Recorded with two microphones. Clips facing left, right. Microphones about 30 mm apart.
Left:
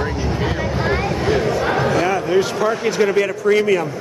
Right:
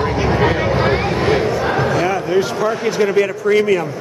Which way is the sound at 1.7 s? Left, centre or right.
Centre.